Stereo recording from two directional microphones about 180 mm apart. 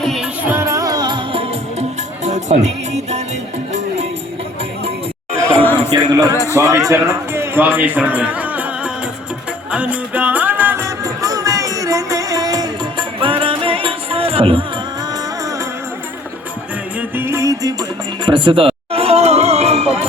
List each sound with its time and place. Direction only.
0.0 s music: centre (ahead or behind)
0.4 s music: 15° right (ahead or behind); by 4.0 s 40° right (ahead or behind)
5.9 s a man's voice: 20° right (ahead or behind)
6.3 s a man's voice: 15° left (ahead or behind)
6.6 s a man's voice: 15° right (ahead or behind)
9.7 s music: 5° right (ahead or behind); by 14.6 s 30° right (ahead or behind)
17.0 s music: 10° right (ahead or behind); by 20.1 s 35° right (ahead or behind)